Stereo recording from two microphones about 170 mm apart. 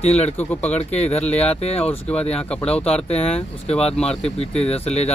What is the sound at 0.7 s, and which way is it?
Speech, 40° left (ahead or behind).